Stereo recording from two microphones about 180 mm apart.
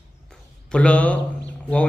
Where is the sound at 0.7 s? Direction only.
5° left (ahead or behind).